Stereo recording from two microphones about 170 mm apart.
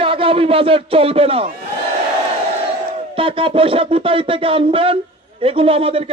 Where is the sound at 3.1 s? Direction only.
30° right (ahead or behind).